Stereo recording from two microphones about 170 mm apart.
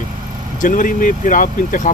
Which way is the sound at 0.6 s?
50° left (ahead or behind).